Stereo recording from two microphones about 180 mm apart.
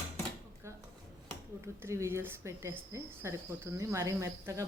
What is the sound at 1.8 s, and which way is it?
Cricket, 15° right (ahead or behind).